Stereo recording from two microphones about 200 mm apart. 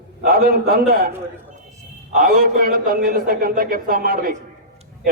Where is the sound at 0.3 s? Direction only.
50° right (ahead or behind).